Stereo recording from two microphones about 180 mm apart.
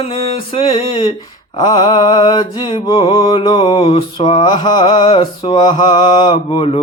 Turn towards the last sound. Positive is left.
turn(degrees=30)  # may be behind; listen again after turning